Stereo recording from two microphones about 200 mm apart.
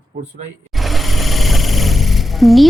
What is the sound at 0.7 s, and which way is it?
Music, centre (ahead or behind).